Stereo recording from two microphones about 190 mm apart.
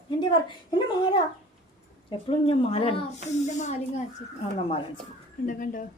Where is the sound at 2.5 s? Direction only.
30° left (ahead or behind).